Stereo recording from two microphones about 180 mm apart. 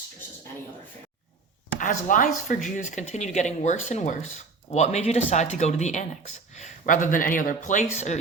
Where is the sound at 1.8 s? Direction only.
45° left (ahead or behind).